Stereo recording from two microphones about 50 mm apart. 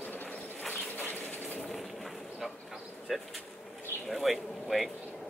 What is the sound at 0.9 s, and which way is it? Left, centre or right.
Bird, left.